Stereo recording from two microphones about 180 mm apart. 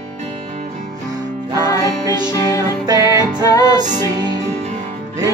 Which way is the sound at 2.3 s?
20° left (ahead or behind).